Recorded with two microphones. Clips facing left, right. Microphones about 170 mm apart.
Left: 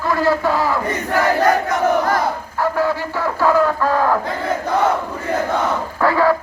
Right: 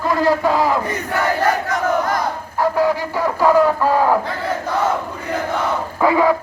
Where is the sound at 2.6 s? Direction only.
15° right (ahead or behind).